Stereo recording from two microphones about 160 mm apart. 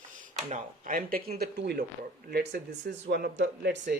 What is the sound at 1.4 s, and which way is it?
Speech, 90° right.